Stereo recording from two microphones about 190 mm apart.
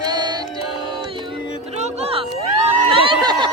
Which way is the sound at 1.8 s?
30° right (ahead or behind).